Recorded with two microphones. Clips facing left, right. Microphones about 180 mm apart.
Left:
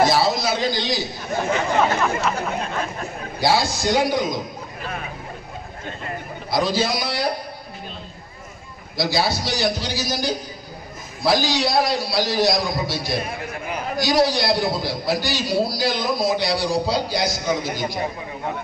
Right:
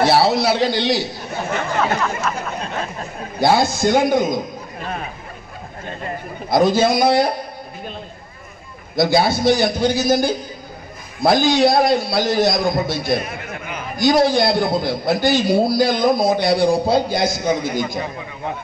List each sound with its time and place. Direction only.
0.0 s a man's voice: 65° right (ahead or behind)
1.8 s speech: 15° left (ahead or behind)
3.3 s a man's voice: 50° right (ahead or behind)
6.5 s a man's voice: 50° right (ahead or behind)
8.9 s a man's voice: 55° right (ahead or behind)
13.2 s a man's voice: 35° left (ahead or behind)
13.9 s a man's voice: 50° right (ahead or behind)